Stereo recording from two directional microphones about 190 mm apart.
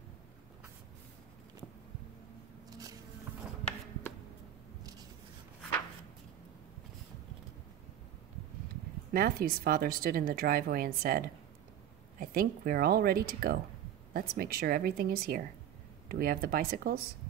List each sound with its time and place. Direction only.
9.1 s speech: 50° right (ahead or behind)